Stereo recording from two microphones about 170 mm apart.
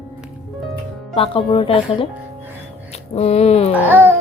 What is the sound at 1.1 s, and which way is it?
Speech, 35° left (ahead or behind).